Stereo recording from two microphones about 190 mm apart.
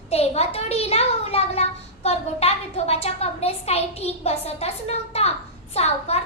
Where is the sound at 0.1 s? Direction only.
35° left (ahead or behind).